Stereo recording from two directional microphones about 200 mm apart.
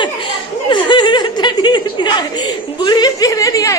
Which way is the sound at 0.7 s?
25° left (ahead or behind).